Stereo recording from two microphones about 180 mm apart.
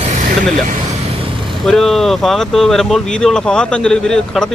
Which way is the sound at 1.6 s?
Centre (ahead or behind).